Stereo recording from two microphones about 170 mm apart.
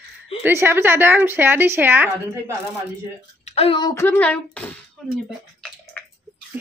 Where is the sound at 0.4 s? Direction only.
15° right (ahead or behind).